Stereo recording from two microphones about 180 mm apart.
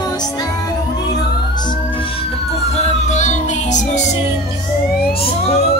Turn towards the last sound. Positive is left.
turn(degrees=40)  # may be behind; listen again after turning